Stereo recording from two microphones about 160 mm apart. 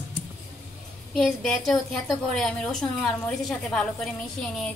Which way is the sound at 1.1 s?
Centre (ahead or behind).